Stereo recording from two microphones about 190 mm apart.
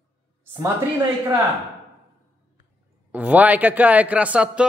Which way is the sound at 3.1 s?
10° right (ahead or behind).